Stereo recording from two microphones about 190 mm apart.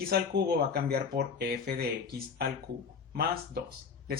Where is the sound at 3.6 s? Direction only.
55° right (ahead or behind).